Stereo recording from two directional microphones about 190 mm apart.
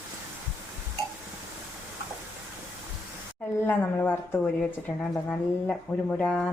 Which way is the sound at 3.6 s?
10° left (ahead or behind).